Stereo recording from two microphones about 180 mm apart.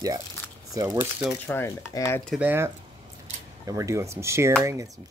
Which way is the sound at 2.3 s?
10° right (ahead or behind).